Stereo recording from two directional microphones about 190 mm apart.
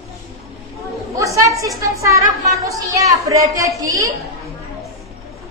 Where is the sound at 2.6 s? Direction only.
15° right (ahead or behind).